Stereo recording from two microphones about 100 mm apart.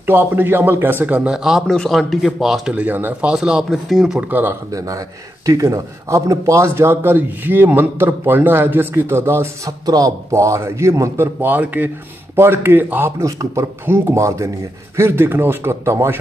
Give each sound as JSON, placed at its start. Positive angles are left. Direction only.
{"t": 0.0, "sound": "a man's voice", "side_deg": -20}
{"t": 2.7, "sound": "speech", "side_deg": -15}
{"t": 4.3, "sound": "speech", "side_deg": -20}
{"t": 4.6, "sound": "speech", "side_deg": -35}